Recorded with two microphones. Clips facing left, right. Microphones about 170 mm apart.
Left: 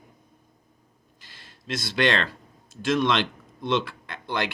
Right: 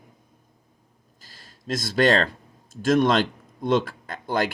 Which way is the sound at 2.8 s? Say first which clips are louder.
Right 4 dB; 45° right (ahead or behind).